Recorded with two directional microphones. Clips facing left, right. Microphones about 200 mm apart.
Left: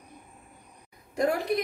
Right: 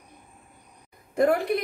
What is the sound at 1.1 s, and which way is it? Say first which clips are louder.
Speech: right 4 dB; 60° right (ahead or behind).